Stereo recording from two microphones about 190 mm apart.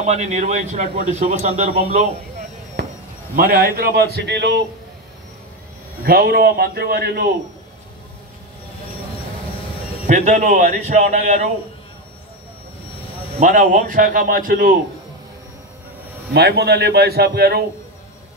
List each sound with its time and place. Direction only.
0.0 s a man's voice: 35° right (ahead or behind)
3.3 s a man's voice: 50° right (ahead or behind)
6.0 s a man's voice: 50° right (ahead or behind)
10.0 s a man's voice: 40° right (ahead or behind)
13.4 s a man's voice: 40° right (ahead or behind)
16.3 s a man's voice: 60° right (ahead or behind)